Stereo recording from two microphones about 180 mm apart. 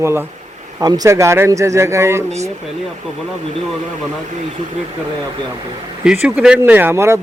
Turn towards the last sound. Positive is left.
turn(degrees=-15)  # may be behind; listen again after turning